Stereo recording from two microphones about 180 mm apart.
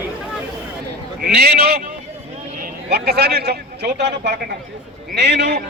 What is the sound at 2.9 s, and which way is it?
A man's voice, 60° right (ahead or behind).